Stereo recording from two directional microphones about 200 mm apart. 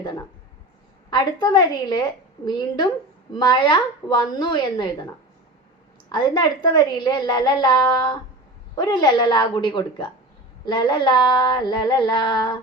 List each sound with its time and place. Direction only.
0.0 s a woman's voice: 20° left (ahead or behind)
6.1 s a woman's voice: 20° left (ahead or behind)